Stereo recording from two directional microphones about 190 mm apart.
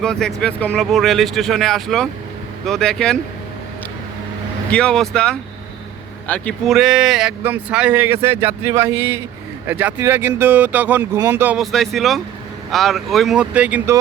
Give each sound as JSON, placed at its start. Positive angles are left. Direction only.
{"t": 0.0, "sound": "speech", "side_deg": 5}
{"t": 4.7, "sound": "speech", "side_deg": 5}